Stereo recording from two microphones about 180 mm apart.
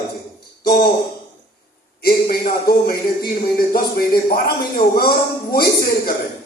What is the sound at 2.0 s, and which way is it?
Speech, 60° left (ahead or behind).